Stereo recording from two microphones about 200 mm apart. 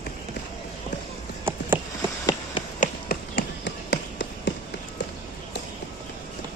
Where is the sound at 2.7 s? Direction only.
45° left (ahead or behind); by 4.5 s 60° left (ahead or behind).